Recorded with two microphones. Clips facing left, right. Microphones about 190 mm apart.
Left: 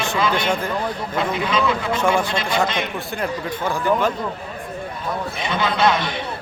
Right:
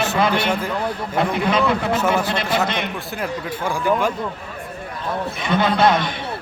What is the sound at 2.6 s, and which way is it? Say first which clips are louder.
Speech: even; 60° right (ahead or behind).